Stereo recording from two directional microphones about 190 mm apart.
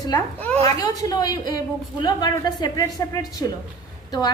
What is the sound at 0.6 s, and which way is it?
A woman's voice, 20° left (ahead or behind).